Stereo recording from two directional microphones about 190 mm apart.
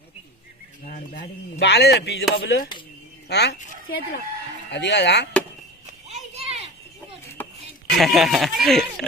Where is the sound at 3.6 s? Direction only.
50° left (ahead or behind).